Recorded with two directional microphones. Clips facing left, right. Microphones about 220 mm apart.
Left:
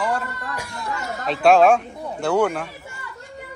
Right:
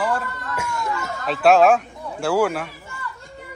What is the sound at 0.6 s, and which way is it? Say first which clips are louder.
Speech: right 5 dB; 30° left (ahead or behind).